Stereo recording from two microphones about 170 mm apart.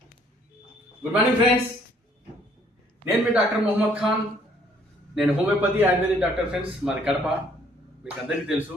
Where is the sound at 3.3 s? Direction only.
5° right (ahead or behind).